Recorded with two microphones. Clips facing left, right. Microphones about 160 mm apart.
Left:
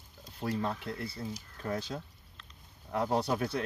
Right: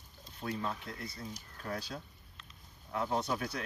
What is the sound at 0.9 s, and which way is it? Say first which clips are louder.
Speech: left 5 dB; 30° left (ahead or behind).